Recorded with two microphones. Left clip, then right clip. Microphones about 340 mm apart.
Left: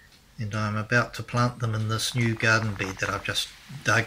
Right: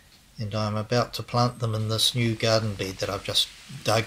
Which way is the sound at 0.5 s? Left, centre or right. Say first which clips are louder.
Left 1 dB; centre.